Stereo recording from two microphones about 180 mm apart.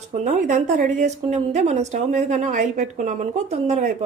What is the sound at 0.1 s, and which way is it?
A woman's voice, 40° right (ahead or behind).